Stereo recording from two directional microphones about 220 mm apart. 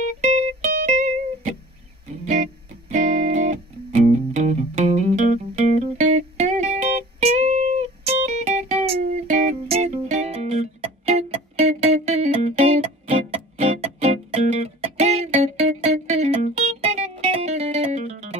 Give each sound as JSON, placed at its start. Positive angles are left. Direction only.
{"t": 0.2, "sound": "music", "side_deg": -30}